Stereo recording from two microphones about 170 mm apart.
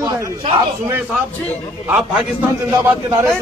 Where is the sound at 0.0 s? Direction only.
25° right (ahead or behind).